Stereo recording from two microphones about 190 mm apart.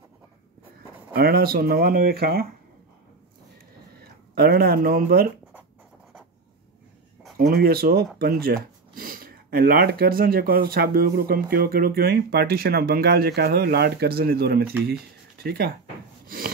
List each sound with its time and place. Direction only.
1.1 s speech: 50° right (ahead or behind)
4.0 s speech: 55° right (ahead or behind)
7.3 s speech: 55° right (ahead or behind)
16.3 s snort: 50° right (ahead or behind)